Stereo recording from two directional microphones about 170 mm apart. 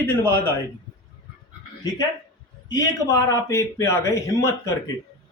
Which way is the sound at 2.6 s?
20° left (ahead or behind).